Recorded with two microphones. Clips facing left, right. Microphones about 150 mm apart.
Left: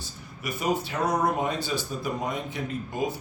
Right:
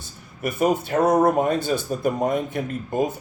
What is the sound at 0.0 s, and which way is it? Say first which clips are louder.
Speech: right 7 dB; 55° right (ahead or behind).